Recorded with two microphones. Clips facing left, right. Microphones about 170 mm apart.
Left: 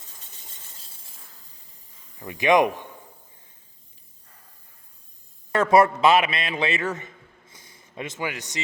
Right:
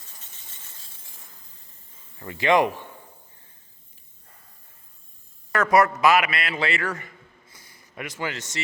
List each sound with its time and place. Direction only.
2.1 s speech: 15° left (ahead or behind)
5.5 s a man's voice: 25° left (ahead or behind)